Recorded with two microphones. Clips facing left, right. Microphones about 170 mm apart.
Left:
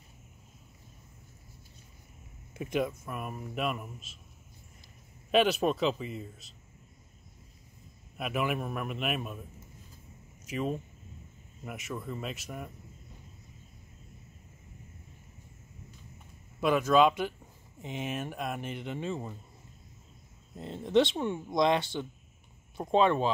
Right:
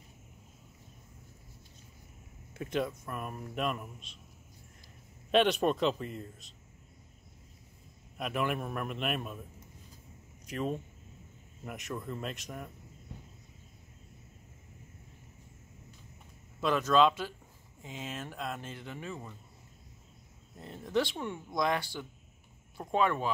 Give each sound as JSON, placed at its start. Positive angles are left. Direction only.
{"t": 2.5, "sound": "speech", "side_deg": 15}
{"t": 5.3, "sound": "speech", "side_deg": 5}
{"t": 8.2, "sound": "speech", "side_deg": 5}
{"t": 10.4, "sound": "speech", "side_deg": 5}
{"t": 16.6, "sound": "speech", "side_deg": 10}
{"t": 20.5, "sound": "speech", "side_deg": 25}